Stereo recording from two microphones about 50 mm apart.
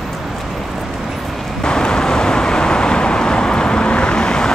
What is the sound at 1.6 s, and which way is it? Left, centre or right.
Vehicle, centre.